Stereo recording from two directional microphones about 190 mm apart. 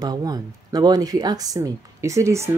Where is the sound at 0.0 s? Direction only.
20° right (ahead or behind).